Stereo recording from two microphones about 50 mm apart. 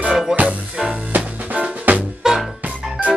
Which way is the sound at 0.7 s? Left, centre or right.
Right.